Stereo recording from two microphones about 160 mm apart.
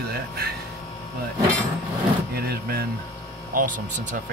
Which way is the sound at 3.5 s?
55° right (ahead or behind).